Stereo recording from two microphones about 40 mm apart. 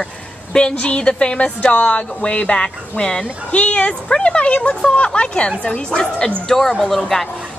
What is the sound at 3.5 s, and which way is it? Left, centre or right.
A woman's voice, left.